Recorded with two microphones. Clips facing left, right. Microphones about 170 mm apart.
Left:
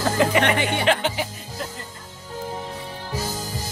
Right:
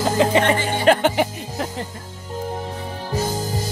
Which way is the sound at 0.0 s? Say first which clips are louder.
Right 2 dB; 25° right (ahead or behind).